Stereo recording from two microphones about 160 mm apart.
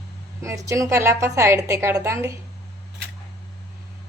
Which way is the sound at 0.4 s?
20° right (ahead or behind).